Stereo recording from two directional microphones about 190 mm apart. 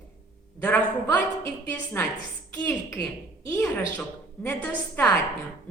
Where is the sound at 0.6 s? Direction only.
10° left (ahead or behind).